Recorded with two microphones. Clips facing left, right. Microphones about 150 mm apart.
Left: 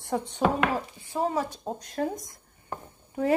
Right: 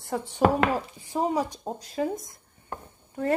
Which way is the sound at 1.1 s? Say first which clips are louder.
Right 2 dB; 15° right (ahead or behind).